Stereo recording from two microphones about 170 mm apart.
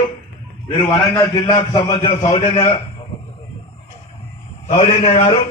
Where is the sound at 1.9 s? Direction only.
40° left (ahead or behind).